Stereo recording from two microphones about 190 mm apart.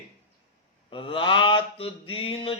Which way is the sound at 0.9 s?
25° left (ahead or behind).